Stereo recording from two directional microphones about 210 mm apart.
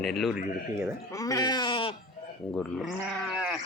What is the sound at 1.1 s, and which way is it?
Speech, 15° left (ahead or behind).